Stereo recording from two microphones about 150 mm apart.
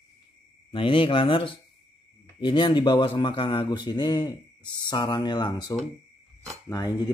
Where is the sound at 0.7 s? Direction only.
35° left (ahead or behind).